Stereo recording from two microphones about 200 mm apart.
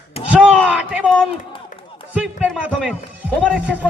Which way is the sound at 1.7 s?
40° left (ahead or behind).